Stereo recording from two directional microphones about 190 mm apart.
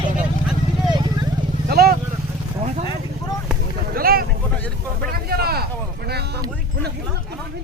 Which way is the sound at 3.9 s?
50° right (ahead or behind).